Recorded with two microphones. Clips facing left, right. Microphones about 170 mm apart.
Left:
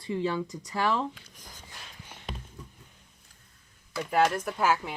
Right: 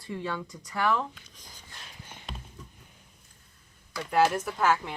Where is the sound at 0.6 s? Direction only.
25° left (ahead or behind).